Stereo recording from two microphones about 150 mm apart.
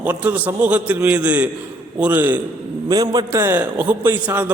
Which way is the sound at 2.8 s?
25° right (ahead or behind).